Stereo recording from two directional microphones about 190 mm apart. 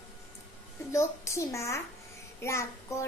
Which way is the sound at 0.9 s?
15° left (ahead or behind).